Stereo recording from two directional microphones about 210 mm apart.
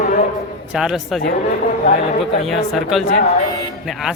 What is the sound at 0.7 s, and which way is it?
Speech, centre (ahead or behind).